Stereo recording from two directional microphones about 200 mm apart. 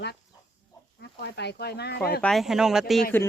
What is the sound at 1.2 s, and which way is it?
Speech, 55° left (ahead or behind).